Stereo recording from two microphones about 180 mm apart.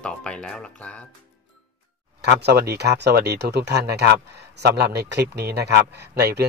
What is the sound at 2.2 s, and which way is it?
A man's voice, 65° right (ahead or behind).